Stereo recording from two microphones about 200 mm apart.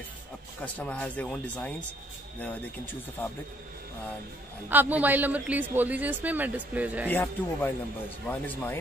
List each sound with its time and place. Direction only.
0.7 s speech: 5° left (ahead or behind)
4.6 s speech: 10° right (ahead or behind)
7.1 s speech: 10° left (ahead or behind)